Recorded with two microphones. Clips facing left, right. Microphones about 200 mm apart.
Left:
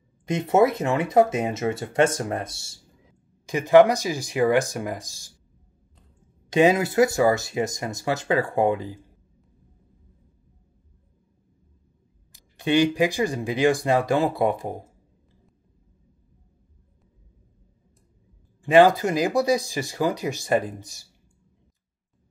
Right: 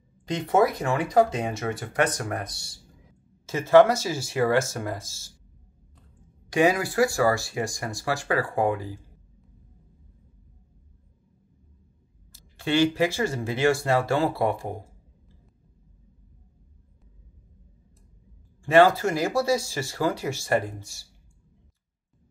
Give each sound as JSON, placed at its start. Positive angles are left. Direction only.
{"t": 0.2, "sound": "speech", "side_deg": 25}
{"t": 3.4, "sound": "speech", "side_deg": 15}
{"t": 6.5, "sound": "speech", "side_deg": 20}
{"t": 12.3, "sound": "speech", "side_deg": 15}
{"t": 18.6, "sound": "speech", "side_deg": 15}